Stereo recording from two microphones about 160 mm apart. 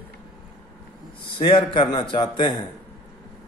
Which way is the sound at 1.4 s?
30° left (ahead or behind).